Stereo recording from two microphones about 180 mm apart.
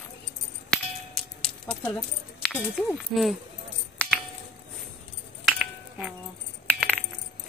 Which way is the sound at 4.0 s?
5° left (ahead or behind).